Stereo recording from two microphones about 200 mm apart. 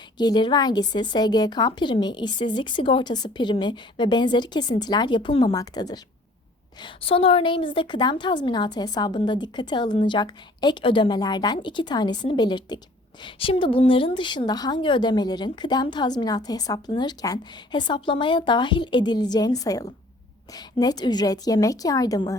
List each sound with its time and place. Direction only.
0.2 s a woman's voice: 20° left (ahead or behind)